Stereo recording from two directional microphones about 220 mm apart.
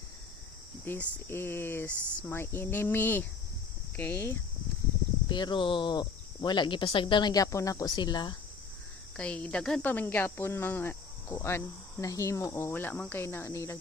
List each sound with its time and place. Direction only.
0.9 s speech: 10° left (ahead or behind)
5.3 s speech: 20° left (ahead or behind)
9.1 s speech: 5° left (ahead or behind)